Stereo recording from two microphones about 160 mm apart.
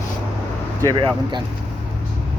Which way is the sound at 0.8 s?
25° right (ahead or behind).